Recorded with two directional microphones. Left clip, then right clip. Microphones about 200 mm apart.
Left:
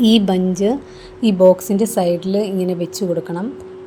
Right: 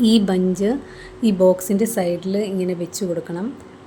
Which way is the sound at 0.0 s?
15° left (ahead or behind).